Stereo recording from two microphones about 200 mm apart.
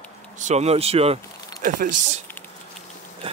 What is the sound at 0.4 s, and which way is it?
Speech, 35° right (ahead or behind).